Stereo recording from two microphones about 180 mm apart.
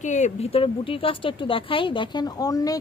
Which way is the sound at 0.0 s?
40° left (ahead or behind).